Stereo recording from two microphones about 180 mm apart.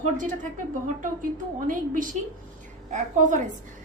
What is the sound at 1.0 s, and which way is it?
A woman's voice, 50° right (ahead or behind).